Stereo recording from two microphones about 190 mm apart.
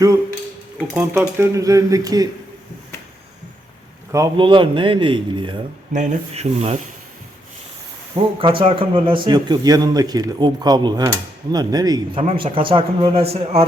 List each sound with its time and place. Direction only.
0.8 s speech: 5° right (ahead or behind)
4.1 s a man's voice: 20° right (ahead or behind)
5.9 s speech: 40° right (ahead or behind)
8.4 s a man's voice: 25° right (ahead or behind)